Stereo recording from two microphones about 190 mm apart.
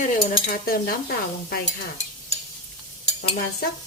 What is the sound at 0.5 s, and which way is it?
Cutlery, 50° left (ahead or behind).